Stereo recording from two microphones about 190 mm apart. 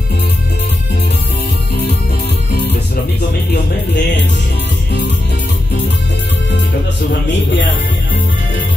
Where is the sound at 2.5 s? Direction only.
55° left (ahead or behind).